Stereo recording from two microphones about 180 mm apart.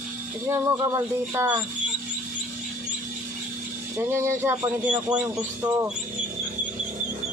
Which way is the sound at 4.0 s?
15° right (ahead or behind).